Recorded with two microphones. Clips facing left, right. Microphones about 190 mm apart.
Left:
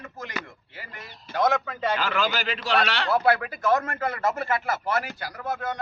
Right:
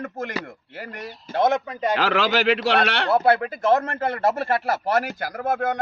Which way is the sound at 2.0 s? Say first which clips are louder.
Right 6 dB; 70° right (ahead or behind).